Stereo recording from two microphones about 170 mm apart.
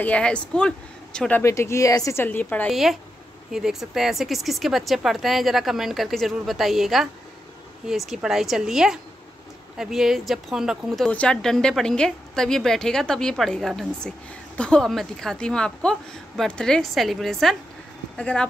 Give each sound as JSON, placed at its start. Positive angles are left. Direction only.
{"t": 0.0, "sound": "speech", "side_deg": 5}
{"t": 1.4, "sound": "speech", "side_deg": 15}
{"t": 2.7, "sound": "speech", "side_deg": 0}